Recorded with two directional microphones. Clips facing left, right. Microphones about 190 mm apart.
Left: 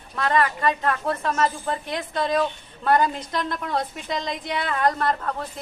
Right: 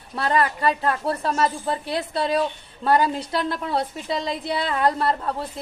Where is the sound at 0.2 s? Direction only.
35° right (ahead or behind).